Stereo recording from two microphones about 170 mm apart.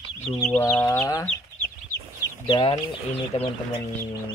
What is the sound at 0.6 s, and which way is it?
Speech, 15° left (ahead or behind).